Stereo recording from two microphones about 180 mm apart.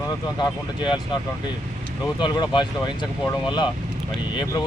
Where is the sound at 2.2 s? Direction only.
25° left (ahead or behind).